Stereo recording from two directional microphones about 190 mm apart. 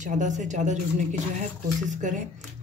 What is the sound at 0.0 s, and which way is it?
Speech, 40° right (ahead or behind).